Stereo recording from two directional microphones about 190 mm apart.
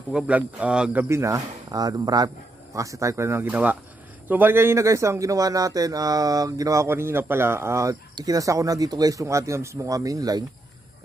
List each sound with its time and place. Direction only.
0.1 s speech: 5° right (ahead or behind)